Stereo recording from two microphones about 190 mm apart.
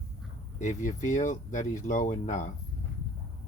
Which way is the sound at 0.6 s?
40° left (ahead or behind).